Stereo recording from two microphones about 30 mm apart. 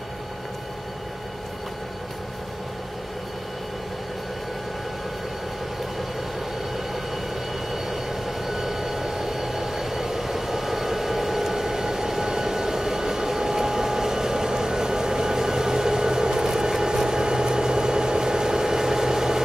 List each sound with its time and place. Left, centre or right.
7.7 s vehicle: centre